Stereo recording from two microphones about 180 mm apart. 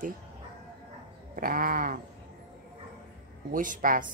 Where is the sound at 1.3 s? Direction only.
50° right (ahead or behind).